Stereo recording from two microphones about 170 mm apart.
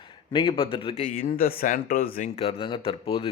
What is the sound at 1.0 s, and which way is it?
Speech, 60° left (ahead or behind).